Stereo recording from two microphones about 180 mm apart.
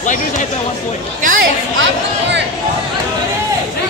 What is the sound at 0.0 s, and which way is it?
Speech, 45° left (ahead or behind).